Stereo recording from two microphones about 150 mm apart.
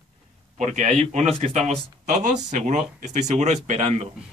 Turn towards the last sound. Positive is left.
turn(degrees=-45)  # may be behind; listen again after turning